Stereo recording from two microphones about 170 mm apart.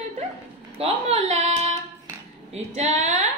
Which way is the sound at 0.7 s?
35° right (ahead or behind).